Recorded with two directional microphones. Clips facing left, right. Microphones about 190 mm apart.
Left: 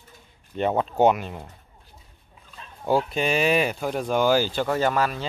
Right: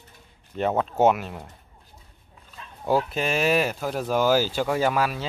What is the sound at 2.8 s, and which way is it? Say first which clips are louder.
Speech: left 1 dB; centre (ahead or behind).